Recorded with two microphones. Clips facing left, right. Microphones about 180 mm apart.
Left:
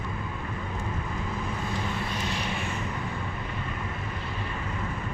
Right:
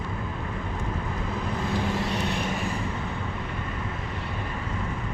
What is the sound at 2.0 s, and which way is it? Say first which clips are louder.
Vehicle: right 4 dB; 65° right (ahead or behind).